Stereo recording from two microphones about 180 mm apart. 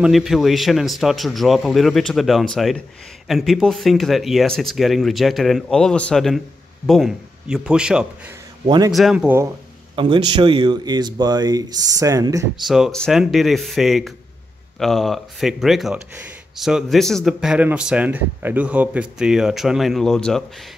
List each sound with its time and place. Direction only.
0.0 s speech: centre (ahead or behind)
8.6 s speech: 25° right (ahead or behind)
8.9 s speech: centre (ahead or behind)
9.9 s speech: 25° right (ahead or behind)
12.6 s speech: centre (ahead or behind)